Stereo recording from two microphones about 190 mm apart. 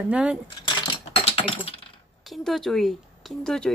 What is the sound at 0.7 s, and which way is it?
Coin, 25° left (ahead or behind).